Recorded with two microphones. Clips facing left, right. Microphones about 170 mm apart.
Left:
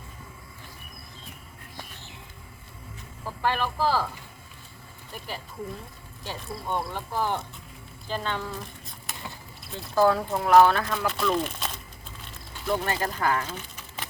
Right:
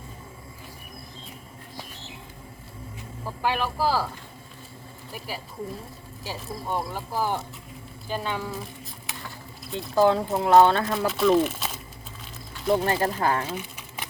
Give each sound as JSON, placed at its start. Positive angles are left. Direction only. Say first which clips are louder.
{"t": 3.2, "sound": "speech", "louder": "right 1 dB", "side_deg": -5}
{"t": 5.1, "sound": "speech", "louder": "right 1 dB", "side_deg": -5}
{"t": 8.0, "sound": "a sound", "louder": "right 1 dB", "side_deg": -10}
{"t": 9.9, "sound": "speech", "louder": "right 2 dB", "side_deg": -20}
{"t": 11.0, "sound": "speech", "louder": "right 8 dB", "side_deg": -5}
{"t": 12.6, "sound": "speech", "louder": "right 5 dB", "side_deg": -30}
{"t": 13.5, "sound": "a sound", "louder": "right 5 dB", "side_deg": -10}